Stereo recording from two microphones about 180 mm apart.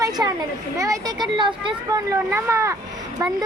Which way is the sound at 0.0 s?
20° right (ahead or behind).